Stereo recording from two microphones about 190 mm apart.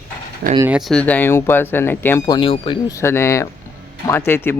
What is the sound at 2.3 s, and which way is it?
Speech, 25° left (ahead or behind).